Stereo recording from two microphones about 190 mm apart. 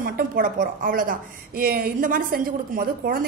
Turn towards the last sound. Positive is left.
turn(degrees=-45)  # may be behind; listen again after turning